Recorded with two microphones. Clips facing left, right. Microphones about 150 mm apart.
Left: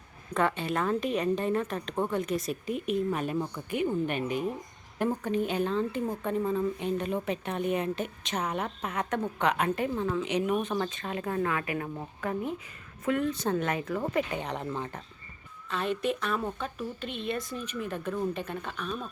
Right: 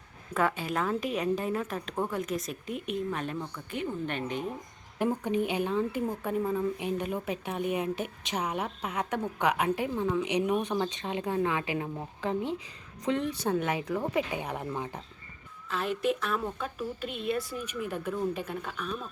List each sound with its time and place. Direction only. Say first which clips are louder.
0.3 s a woman's voice: left 1 dB; 5° right (ahead or behind)
4.9 s a woman's voice: even; 10° right (ahead or behind)
13.4 s a woman's voice: even; 10° right (ahead or behind)